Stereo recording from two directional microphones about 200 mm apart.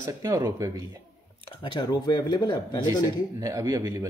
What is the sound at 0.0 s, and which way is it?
Speech, 15° right (ahead or behind).